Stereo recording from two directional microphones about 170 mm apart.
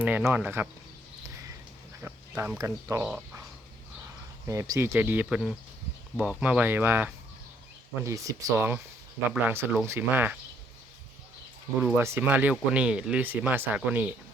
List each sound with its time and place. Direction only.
0.0 s speech: 10° right (ahead or behind)
2.0 s a sound: 10° right (ahead or behind)
2.6 s speech: 15° right (ahead or behind)
3.1 s speech: 5° right (ahead or behind)
4.4 s speech: 20° right (ahead or behind)
11.8 s speech: 15° right (ahead or behind)